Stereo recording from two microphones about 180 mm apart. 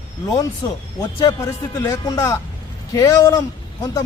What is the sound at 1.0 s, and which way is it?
A man's voice, 15° left (ahead or behind).